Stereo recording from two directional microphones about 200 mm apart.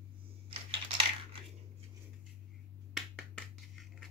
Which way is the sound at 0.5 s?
25° right (ahead or behind).